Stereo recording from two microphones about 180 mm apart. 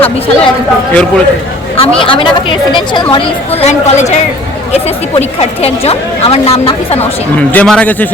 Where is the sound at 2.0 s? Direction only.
30° left (ahead or behind).